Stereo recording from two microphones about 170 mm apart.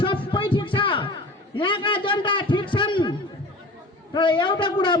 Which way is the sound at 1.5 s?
30° left (ahead or behind).